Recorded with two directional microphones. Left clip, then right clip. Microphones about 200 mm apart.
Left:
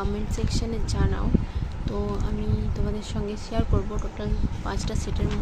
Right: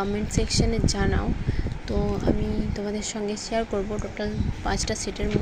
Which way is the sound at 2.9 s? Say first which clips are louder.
Right 3 dB; 10° right (ahead or behind).